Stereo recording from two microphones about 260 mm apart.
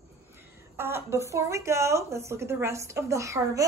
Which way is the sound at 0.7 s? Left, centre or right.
Centre.